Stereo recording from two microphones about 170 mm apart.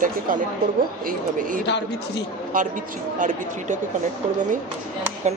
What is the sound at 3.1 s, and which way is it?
Speech, 50° right (ahead or behind).